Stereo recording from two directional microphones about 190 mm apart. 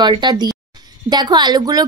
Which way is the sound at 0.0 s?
25° right (ahead or behind).